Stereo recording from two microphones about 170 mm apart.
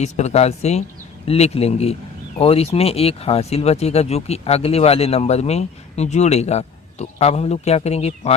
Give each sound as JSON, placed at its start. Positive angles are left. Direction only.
{"t": 0.0, "sound": "speech", "side_deg": 40}